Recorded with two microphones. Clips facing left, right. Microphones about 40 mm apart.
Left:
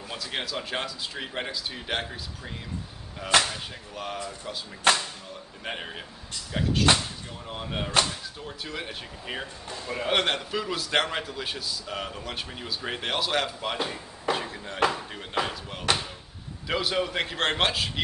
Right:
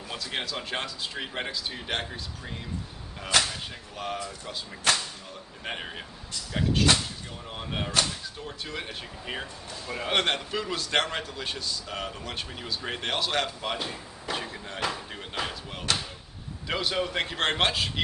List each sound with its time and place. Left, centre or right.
0.1 s a man's voice: centre
3.5 s a man's voice: centre
4.9 s whip: left
5.6 s a man's voice: centre
14.3 s a sound: centre
15.3 s slam: centre
16.6 s a man's voice: centre